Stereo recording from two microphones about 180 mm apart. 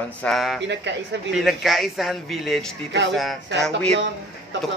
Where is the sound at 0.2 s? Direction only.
Centre (ahead or behind).